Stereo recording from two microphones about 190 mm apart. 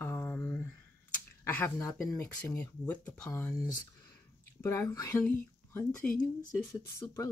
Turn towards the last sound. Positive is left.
turn(degrees=15)  # may be behind; listen again after turning